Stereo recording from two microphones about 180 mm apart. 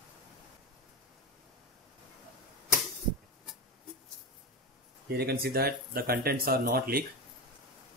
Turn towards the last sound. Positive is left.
turn(degrees=-60)  # may be behind; listen again after turning